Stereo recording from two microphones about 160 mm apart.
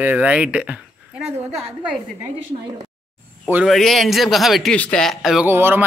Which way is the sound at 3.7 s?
Centre (ahead or behind).